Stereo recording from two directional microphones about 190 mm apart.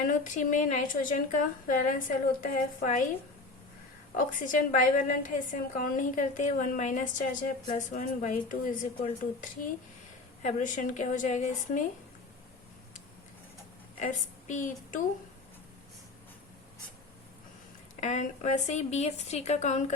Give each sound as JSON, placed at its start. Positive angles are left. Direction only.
{"t": 0.0, "sound": "a woman's voice", "side_deg": 40}
{"t": 4.1, "sound": "a woman's voice", "side_deg": 45}
{"t": 14.0, "sound": "a woman's voice", "side_deg": 40}
{"t": 18.0, "sound": "a woman's voice", "side_deg": 40}